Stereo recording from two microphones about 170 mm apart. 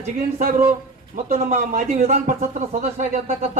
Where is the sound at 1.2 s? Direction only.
45° right (ahead or behind).